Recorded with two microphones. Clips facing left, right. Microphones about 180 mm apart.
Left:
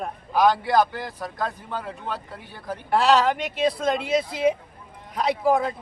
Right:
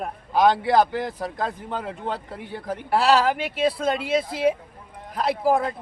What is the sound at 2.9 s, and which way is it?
A man's voice, 5° right (ahead or behind).